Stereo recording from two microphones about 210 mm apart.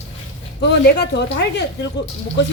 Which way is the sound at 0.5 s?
50° left (ahead or behind).